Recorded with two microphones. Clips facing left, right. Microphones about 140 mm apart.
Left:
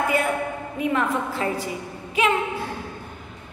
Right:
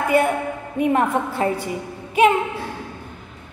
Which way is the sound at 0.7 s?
45° right (ahead or behind).